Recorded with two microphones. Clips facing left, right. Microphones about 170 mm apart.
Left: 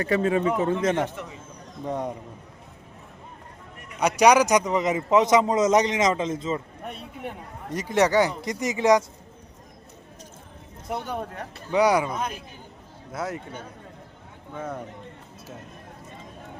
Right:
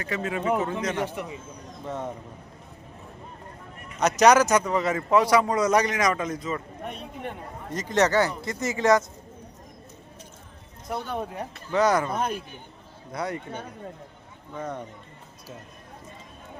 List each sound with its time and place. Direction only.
0.0 s a man's voice: 30° left (ahead or behind)
1.9 s a man's voice: 15° left (ahead or behind)
4.0 s a man's voice: 10° left (ahead or behind)
6.8 s a man's voice: 5° left (ahead or behind)
10.9 s a man's voice: 15° left (ahead or behind)
14.5 s speech: 5° left (ahead or behind)